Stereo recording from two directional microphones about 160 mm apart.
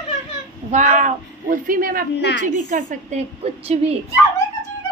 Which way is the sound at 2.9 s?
45° right (ahead or behind).